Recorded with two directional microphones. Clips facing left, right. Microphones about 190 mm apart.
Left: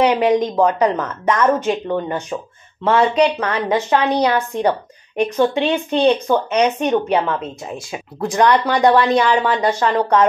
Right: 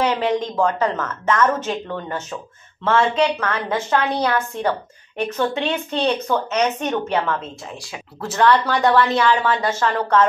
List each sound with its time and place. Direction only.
0.0 s a woman's voice: 10° left (ahead or behind)